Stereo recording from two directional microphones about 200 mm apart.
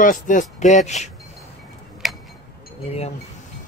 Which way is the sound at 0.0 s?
40° left (ahead or behind).